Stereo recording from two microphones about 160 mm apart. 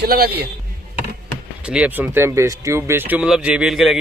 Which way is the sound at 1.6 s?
5° right (ahead or behind).